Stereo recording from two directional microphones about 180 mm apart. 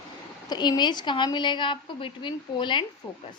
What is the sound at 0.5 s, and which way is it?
A woman's voice, 25° left (ahead or behind).